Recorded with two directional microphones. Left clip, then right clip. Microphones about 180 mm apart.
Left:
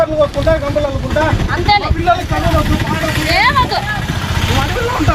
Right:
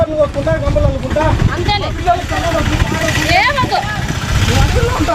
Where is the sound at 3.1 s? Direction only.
45° right (ahead or behind).